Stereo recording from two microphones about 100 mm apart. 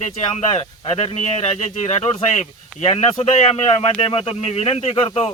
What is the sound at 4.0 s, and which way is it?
Speech, 65° left (ahead or behind).